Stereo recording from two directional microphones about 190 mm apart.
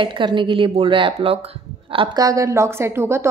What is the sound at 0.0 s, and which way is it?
A woman's voice, 25° right (ahead or behind).